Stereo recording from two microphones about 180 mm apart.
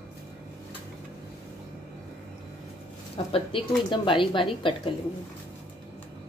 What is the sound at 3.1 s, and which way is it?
Speech, 30° left (ahead or behind).